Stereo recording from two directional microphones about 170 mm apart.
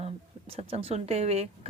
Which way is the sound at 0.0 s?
35° right (ahead or behind).